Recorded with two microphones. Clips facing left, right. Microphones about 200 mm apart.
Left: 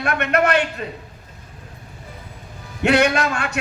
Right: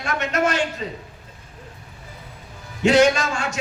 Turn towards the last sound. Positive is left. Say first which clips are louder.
# left 3 dB
turn(degrees=60)  # may be behind; listen again after turning